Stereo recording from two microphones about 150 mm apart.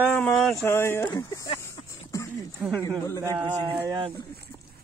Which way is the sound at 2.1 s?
20° left (ahead or behind).